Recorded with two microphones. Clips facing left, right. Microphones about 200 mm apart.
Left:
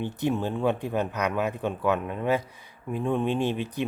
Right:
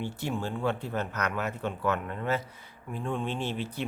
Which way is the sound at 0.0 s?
20° left (ahead or behind).